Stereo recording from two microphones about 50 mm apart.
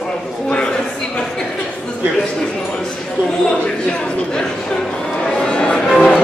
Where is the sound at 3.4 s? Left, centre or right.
Centre.